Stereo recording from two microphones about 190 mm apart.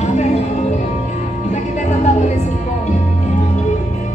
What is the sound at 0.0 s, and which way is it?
Music, 35° left (ahead or behind).